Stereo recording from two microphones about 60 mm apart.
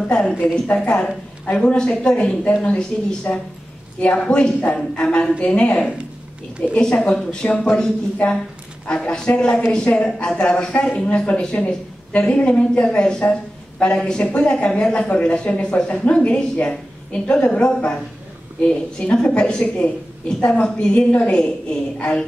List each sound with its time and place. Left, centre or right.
0.0 s a sound: centre
0.7 s a woman's voice: centre
8.2 s a woman's voice: left